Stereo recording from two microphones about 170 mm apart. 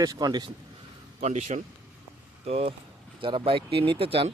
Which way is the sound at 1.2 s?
45° right (ahead or behind).